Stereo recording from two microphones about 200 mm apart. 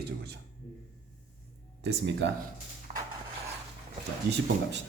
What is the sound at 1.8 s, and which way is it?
Speech, 60° right (ahead or behind).